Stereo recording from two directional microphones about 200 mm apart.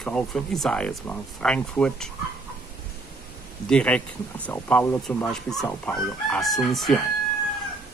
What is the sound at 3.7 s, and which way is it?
Speech, 5° left (ahead or behind).